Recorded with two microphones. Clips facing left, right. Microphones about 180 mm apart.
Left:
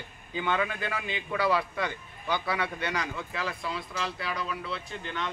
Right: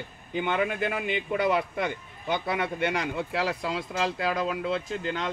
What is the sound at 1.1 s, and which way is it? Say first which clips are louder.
Speech: right 1 dB; 20° right (ahead or behind).